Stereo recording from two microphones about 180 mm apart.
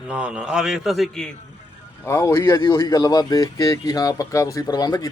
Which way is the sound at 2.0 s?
15° left (ahead or behind).